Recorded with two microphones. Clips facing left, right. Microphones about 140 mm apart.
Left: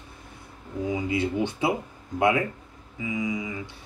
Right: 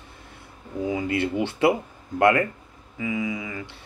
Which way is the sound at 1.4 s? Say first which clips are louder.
Right 5 dB; 70° right (ahead or behind).